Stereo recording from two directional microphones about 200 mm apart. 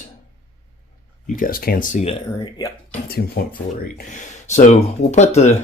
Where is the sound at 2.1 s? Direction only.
20° left (ahead or behind).